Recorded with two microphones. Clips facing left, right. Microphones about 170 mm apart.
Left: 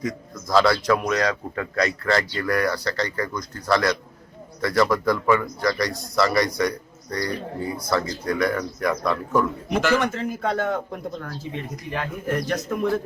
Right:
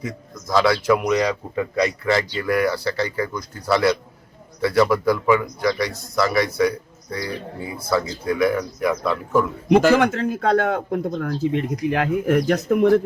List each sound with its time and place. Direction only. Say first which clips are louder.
0.0 s speech: left 2 dB; 5° right (ahead or behind)
0.9 s speech: right 3 dB; 15° right (ahead or behind)
10.0 s speech: right 5 dB; 80° right
11.2 s speech: right 10 dB; 90° right